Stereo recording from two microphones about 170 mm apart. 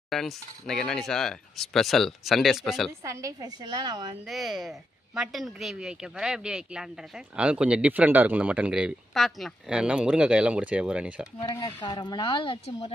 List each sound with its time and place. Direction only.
0.1 s a woman's voice: centre (ahead or behind)
3.0 s a woman's voice: 20° right (ahead or behind)
4.3 s a woman's voice: centre (ahead or behind)
11.3 s speech: 20° left (ahead or behind)